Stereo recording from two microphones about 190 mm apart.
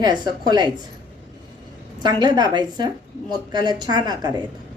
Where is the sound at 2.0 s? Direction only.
20° right (ahead or behind).